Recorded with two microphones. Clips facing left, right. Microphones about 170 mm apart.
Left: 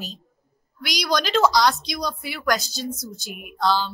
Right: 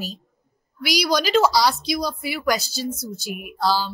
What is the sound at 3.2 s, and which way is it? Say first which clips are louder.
Speech: even; 5° right (ahead or behind).